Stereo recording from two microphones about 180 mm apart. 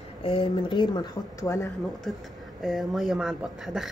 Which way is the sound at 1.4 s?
15° left (ahead or behind).